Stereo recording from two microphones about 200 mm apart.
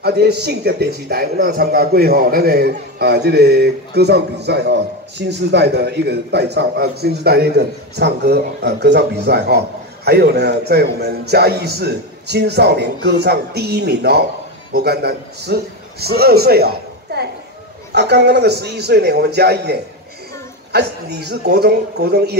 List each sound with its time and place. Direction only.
0.0 s a man's voice: 55° right (ahead or behind)